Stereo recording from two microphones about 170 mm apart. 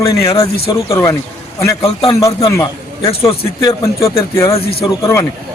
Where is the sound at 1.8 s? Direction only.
35° left (ahead or behind).